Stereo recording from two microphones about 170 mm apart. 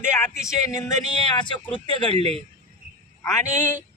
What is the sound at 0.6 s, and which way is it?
Speech, 20° left (ahead or behind).